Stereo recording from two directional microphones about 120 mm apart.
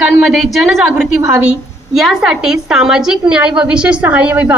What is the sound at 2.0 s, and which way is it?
A woman's voice, 5° right (ahead or behind).